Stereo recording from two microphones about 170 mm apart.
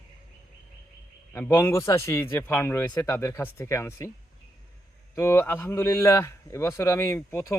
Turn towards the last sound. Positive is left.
turn(degrees=15)  # may be behind; listen again after turning